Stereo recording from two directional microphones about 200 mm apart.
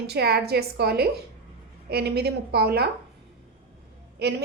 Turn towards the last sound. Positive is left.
turn(degrees=-55)  # may be behind; listen again after turning